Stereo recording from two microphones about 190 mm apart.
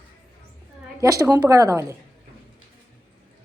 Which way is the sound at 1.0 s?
15° right (ahead or behind).